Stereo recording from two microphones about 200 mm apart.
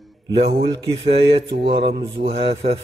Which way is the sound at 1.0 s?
30° right (ahead or behind).